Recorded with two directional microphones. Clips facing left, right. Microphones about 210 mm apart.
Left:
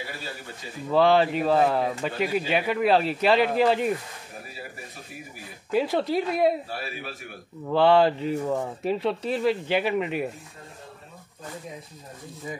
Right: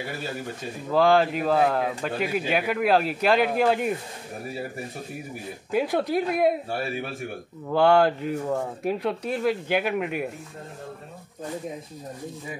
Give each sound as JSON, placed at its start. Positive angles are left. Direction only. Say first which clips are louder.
{"t": 0.9, "sound": "a man's voice", "louder": "even", "side_deg": 0}
{"t": 5.8, "sound": "a man's voice", "louder": "even", "side_deg": 0}
{"t": 6.7, "sound": "a man's voice", "louder": "right 6 dB", "side_deg": -50}
{"t": 7.7, "sound": "a man's voice", "louder": "even", "side_deg": 0}